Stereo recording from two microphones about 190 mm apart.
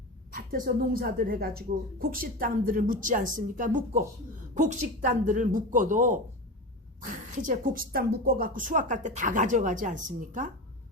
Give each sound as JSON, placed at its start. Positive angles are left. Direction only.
{"t": 0.3, "sound": "speech", "side_deg": -45}